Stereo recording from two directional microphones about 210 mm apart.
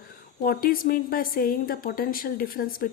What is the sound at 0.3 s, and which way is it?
A woman's voice, 45° left (ahead or behind).